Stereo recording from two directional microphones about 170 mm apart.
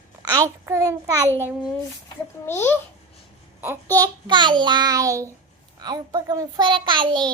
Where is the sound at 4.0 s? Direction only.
20° right (ahead or behind).